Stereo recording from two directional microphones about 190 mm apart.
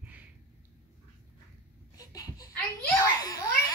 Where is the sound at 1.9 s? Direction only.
20° left (ahead or behind).